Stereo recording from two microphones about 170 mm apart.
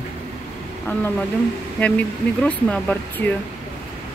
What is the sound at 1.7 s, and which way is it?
Speech, 10° left (ahead or behind).